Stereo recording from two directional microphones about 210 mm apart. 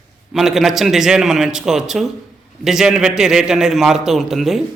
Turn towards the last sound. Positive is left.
turn(degrees=0)  # may be behind; listen again after turning